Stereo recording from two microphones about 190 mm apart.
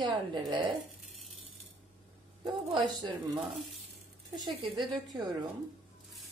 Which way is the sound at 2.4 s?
25° right (ahead or behind).